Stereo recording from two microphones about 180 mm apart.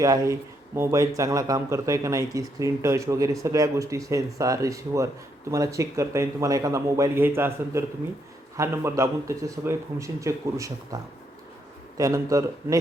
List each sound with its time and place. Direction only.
0.0 s a man's voice: 20° right (ahead or behind)